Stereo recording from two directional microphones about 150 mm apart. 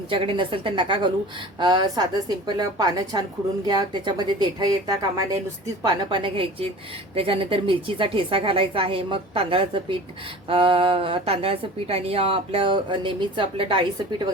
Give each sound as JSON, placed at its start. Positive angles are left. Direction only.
{"t": 0.1, "sound": "a woman's voice", "side_deg": -35}